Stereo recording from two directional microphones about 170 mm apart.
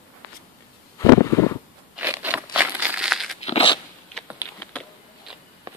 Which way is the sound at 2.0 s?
10° right (ahead or behind).